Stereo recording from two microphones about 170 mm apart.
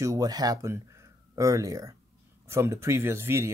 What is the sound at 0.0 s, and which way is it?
Speech, 20° right (ahead or behind).